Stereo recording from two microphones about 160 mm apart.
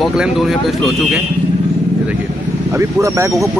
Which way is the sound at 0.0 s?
5° right (ahead or behind).